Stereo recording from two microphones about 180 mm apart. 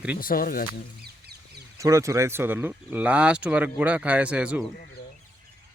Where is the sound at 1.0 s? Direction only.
60° right (ahead or behind).